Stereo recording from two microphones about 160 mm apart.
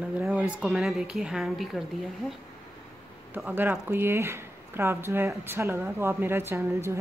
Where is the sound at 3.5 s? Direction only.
10° right (ahead or behind).